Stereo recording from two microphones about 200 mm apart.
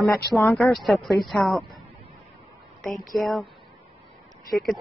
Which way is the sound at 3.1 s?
Centre (ahead or behind).